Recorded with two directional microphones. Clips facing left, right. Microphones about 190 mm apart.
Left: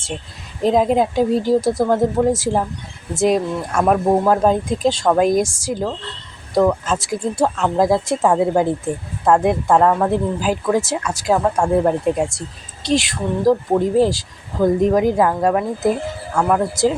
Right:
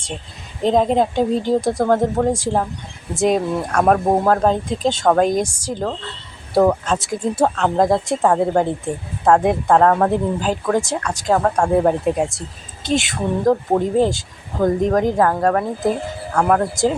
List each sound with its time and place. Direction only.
0.6 s speech: 5° left (ahead or behind)